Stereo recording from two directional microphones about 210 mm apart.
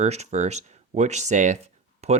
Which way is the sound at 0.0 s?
30° right (ahead or behind).